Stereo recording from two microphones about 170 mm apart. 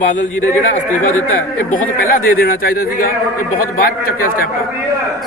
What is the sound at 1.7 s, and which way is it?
A man's voice, 60° left (ahead or behind).